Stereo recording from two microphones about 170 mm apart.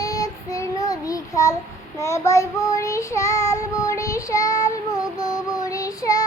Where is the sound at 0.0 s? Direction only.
20° left (ahead or behind).